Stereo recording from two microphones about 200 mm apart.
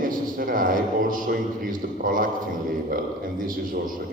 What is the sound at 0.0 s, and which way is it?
A man's voice, 45° right (ahead or behind).